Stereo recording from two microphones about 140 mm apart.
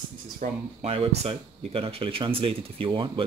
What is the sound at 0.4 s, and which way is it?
Speech, 75° right (ahead or behind).